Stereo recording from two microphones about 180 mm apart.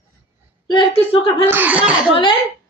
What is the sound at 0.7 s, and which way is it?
Speech, 30° left (ahead or behind).